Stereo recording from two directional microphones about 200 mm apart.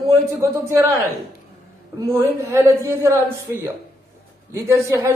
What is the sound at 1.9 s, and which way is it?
A woman's voice, 15° right (ahead or behind).